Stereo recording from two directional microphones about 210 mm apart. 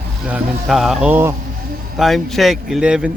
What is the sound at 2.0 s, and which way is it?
Speech, centre (ahead or behind).